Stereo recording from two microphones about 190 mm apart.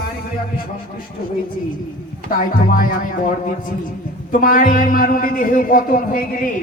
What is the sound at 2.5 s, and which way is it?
Speech, 45° left (ahead or behind).